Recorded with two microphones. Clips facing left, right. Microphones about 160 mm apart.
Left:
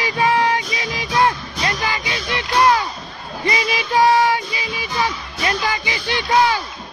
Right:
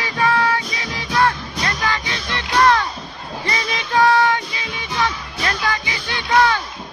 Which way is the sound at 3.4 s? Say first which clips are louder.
Left 4 dB; 10° left (ahead or behind).